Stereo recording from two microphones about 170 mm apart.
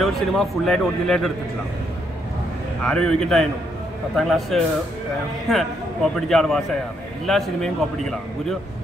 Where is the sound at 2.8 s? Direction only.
5° left (ahead or behind).